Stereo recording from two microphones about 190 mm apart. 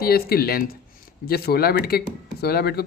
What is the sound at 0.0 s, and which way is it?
Speech, 55° left (ahead or behind).